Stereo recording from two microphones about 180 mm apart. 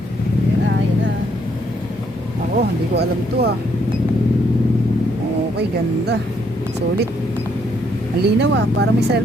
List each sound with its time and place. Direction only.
2.6 s speech: 65° right (ahead or behind)
8.2 s speech: 70° right (ahead or behind)